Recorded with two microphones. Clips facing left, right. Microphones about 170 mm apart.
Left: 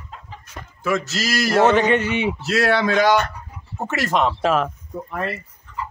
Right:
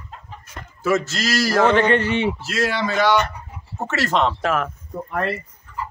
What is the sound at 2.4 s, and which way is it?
Speech, 65° left (ahead or behind).